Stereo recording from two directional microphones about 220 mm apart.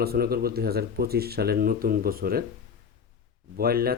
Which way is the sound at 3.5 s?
45° right (ahead or behind).